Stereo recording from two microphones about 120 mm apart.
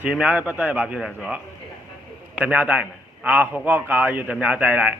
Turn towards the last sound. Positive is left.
turn(degrees=-10)  # may be behind; listen again after turning